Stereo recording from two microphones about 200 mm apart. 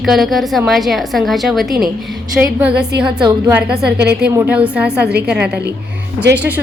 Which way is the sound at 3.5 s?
5° right (ahead or behind).